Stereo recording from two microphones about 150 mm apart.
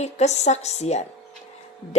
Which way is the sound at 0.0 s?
50° left (ahead or behind).